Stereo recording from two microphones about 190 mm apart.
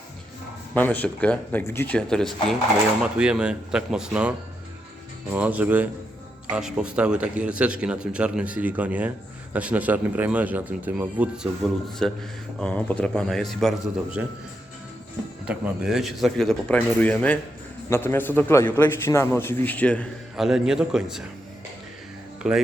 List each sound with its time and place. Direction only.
0.7 s a man's voice: 10° left (ahead or behind); by 14.3 s 5° right (ahead or behind)
15.4 s a man's voice: 5° right (ahead or behind)
22.4 s speech: 5° right (ahead or behind)